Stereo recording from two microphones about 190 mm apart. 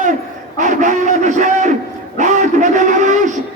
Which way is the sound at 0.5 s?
40° right (ahead or behind).